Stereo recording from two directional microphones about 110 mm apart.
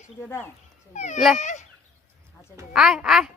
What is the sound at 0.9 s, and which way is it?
Speech, 90° left.